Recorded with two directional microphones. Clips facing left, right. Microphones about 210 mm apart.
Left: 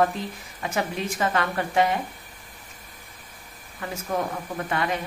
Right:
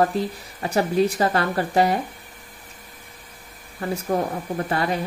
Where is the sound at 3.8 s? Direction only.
35° right (ahead or behind).